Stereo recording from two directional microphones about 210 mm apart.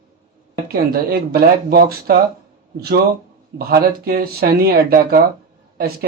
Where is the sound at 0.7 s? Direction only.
45° right (ahead or behind).